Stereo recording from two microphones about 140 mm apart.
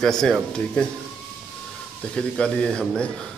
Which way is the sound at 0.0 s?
5° left (ahead or behind).